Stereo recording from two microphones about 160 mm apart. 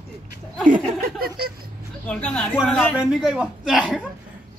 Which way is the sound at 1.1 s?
70° right (ahead or behind).